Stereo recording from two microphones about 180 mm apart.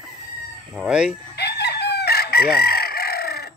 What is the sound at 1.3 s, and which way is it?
Chicken, 65° left (ahead or behind).